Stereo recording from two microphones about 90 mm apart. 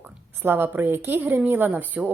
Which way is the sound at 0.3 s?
25° right (ahead or behind).